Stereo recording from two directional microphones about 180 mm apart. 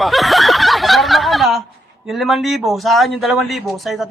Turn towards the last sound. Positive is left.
turn(degrees=0)  # may be behind; listen again after turning